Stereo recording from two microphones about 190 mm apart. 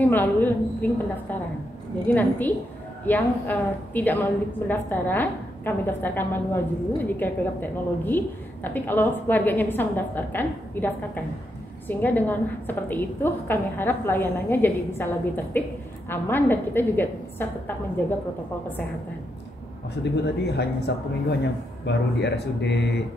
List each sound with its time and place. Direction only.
0.0 s a woman's voice: 10° left (ahead or behind)
2.0 s a woman's voice: 10° left (ahead or behind)
20.0 s speech: 60° left (ahead or behind)